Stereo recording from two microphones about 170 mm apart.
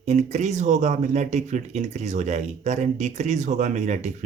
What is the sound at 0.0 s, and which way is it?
Speech, 40° right (ahead or behind).